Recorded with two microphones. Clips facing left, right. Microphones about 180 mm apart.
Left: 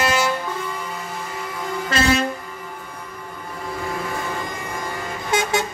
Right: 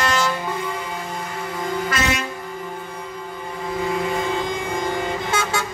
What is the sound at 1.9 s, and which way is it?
Vehicle, 30° left (ahead or behind).